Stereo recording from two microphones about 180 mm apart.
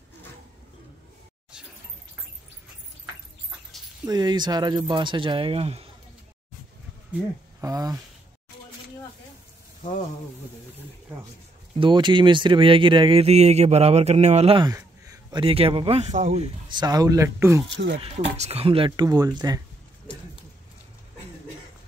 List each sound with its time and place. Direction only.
4.0 s speech: 20° right (ahead or behind)
7.6 s speech: 20° right (ahead or behind)
11.8 s speech: 25° right (ahead or behind)
14.6 s a sound: 20° right (ahead or behind)
15.4 s speech: 30° right (ahead or behind); by 17.6 s 15° right (ahead or behind)
17.6 s speech: 75° right (ahead or behind)
18.3 s speech: 35° right (ahead or behind); by 19.6 s 20° right (ahead or behind)